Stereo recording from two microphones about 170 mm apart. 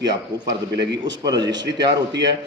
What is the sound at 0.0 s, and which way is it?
Speech, 25° right (ahead or behind).